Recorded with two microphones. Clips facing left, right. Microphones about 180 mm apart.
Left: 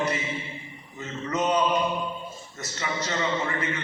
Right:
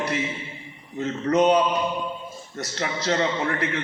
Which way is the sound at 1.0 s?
65° right (ahead or behind).